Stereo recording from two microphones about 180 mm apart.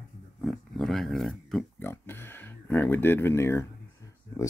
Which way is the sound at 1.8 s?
10° left (ahead or behind).